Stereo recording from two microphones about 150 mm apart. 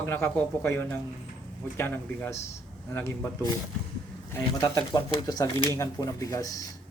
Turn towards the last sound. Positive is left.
turn(degrees=25)  # may be behind; listen again after turning